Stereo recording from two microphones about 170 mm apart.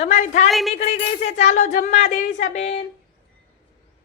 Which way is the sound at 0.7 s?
40° left (ahead or behind).